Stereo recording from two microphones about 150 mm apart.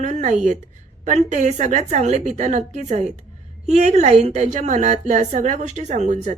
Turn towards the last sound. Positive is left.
turn(degrees=-50)  # may be behind; listen again after turning